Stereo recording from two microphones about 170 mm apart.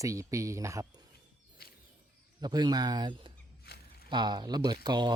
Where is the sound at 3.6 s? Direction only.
65° left (ahead or behind).